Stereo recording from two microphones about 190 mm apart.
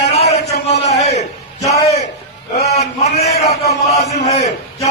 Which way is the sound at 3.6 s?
35° left (ahead or behind).